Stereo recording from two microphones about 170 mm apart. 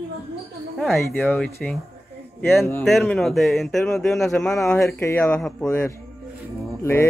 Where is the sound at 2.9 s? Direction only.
Centre (ahead or behind).